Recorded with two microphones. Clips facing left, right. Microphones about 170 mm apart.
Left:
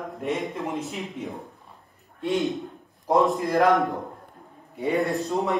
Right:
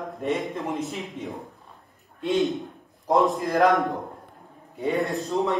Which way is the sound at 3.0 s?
Centre (ahead or behind).